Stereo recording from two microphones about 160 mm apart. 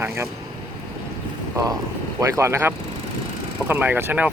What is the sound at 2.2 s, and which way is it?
Speech, 20° right (ahead or behind).